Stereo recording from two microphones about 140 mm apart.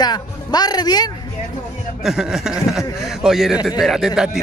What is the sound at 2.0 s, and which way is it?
A man's voice, 5° right (ahead or behind).